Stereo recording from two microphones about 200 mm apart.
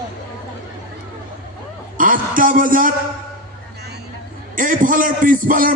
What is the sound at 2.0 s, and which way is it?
Speech, 45° right (ahead or behind).